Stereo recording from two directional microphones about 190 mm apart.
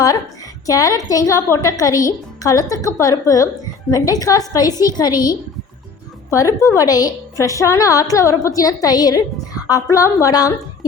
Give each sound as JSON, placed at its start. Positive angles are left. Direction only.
{"t": 0.7, "sound": "a woman's voice", "side_deg": 20}